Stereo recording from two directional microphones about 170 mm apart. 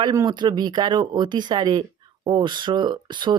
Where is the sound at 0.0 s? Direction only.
20° right (ahead or behind).